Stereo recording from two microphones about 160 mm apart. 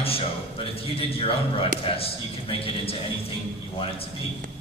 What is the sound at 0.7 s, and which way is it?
Speech, 35° left (ahead or behind).